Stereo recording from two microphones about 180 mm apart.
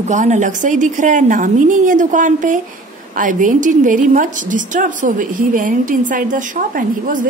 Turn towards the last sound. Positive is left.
turn(degrees=-50)  # may be behind; listen again after turning